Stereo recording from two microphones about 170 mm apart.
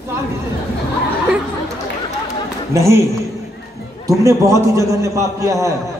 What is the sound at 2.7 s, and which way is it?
Speech, 15° right (ahead or behind).